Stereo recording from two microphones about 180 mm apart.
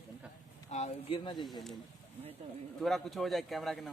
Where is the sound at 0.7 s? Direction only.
40° left (ahead or behind).